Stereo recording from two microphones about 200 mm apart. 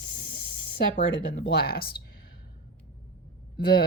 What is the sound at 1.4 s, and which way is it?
Speech, 55° left (ahead or behind).